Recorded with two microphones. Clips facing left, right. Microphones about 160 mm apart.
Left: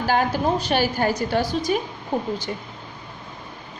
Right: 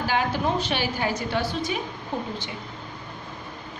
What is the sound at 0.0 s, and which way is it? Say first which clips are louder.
A woman's voice: left 4 dB; 45° left (ahead or behind).